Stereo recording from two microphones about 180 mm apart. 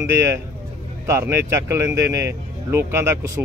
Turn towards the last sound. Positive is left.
turn(degrees=-15)  # may be behind; listen again after turning